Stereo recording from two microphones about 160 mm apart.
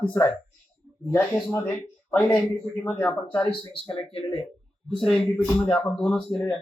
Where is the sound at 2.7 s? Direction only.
10° left (ahead or behind).